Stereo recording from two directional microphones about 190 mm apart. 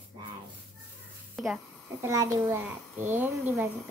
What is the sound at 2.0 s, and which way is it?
A child's voice, 15° right (ahead or behind).